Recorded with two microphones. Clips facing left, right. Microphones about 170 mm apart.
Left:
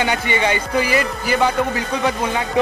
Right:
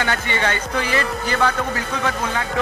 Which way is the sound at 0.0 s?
15° left (ahead or behind).